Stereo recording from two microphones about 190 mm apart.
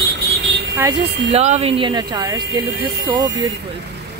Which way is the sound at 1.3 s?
35° right (ahead or behind).